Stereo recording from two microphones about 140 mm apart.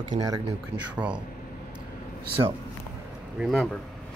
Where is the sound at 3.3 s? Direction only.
Centre (ahead or behind).